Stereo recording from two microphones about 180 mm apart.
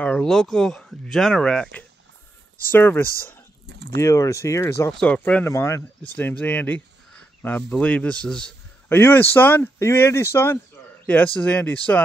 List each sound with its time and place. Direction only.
0.0 s a man's voice: 5° left (ahead or behind)